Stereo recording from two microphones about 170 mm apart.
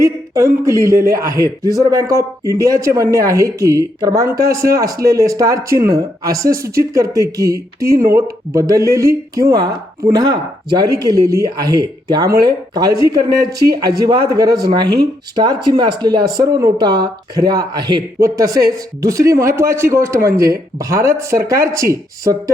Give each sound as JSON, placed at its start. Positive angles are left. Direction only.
{"t": 0.0, "sound": "a woman's voice", "side_deg": -15}